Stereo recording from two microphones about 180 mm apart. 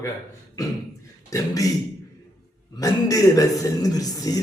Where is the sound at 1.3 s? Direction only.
20° left (ahead or behind).